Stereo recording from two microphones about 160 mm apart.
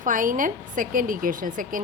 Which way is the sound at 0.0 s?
55° right (ahead or behind).